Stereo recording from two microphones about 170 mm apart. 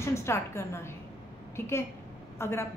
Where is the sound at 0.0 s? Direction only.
15° left (ahead or behind).